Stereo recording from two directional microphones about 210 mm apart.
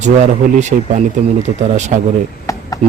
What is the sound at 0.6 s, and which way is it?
A man's voice, 35° right (ahead or behind).